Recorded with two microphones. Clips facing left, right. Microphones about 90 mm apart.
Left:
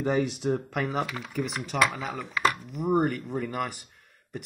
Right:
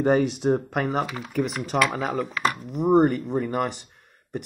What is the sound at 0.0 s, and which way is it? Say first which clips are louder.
Speech: right 6 dB; 50° right (ahead or behind).